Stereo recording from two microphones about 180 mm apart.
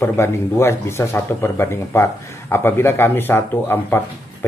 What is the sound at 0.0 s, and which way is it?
Speech, 15° left (ahead or behind).